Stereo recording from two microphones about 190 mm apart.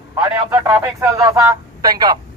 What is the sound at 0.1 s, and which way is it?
A man's voice, 15° right (ahead or behind).